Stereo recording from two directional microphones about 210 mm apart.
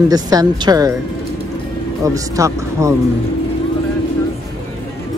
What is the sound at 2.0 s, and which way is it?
Speech, 15° right (ahead or behind).